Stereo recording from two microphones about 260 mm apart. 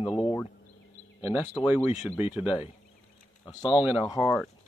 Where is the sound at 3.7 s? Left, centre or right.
Centre.